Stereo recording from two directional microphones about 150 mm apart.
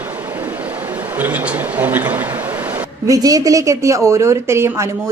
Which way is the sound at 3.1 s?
25° right (ahead or behind).